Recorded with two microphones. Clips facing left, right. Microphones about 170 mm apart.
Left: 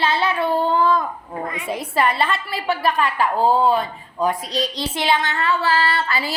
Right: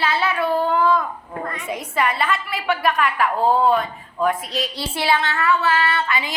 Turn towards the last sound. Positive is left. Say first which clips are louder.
# even
turn(degrees=35)  # may be behind; listen again after turning